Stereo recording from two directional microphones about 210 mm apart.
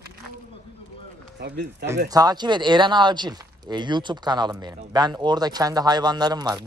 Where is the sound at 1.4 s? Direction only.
50° right (ahead or behind).